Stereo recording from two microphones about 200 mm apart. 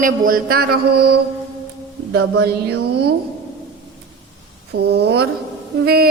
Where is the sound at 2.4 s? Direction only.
55° right (ahead or behind).